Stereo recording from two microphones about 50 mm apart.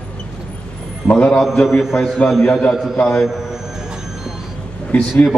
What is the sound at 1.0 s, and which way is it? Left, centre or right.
Speech, centre.